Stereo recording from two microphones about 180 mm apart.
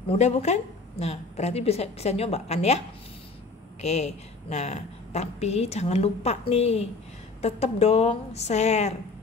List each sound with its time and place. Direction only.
0.1 s a woman's voice: 40° left (ahead or behind)
3.8 s a woman's voice: 35° left (ahead or behind)